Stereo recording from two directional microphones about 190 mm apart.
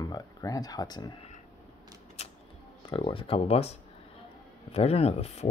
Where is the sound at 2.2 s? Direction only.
35° left (ahead or behind).